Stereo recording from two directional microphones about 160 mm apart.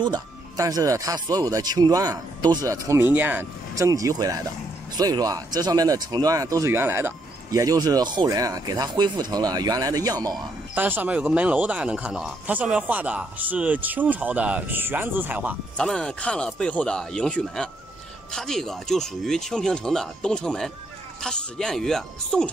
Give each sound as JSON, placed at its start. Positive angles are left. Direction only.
{"t": 0.0, "sound": "speech", "side_deg": -25}
{"t": 10.3, "sound": "speech", "side_deg": -10}
{"t": 15.8, "sound": "speech", "side_deg": 5}